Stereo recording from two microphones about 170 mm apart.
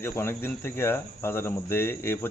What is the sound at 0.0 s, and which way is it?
Speech, 15° left (ahead or behind).